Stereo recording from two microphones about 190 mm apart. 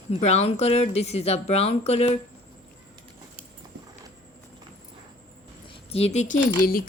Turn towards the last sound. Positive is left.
turn(degrees=45)  # may be behind; listen again after turning